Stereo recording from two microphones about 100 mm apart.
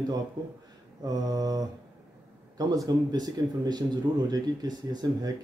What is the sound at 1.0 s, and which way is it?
Mantra, 40° right (ahead or behind).